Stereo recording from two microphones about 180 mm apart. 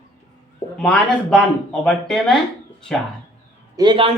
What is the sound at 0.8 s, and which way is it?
Speech, centre (ahead or behind).